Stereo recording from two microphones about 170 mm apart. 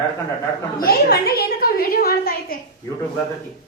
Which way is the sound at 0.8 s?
65° left (ahead or behind).